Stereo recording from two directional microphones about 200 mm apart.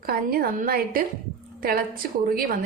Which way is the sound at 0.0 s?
50° right (ahead or behind).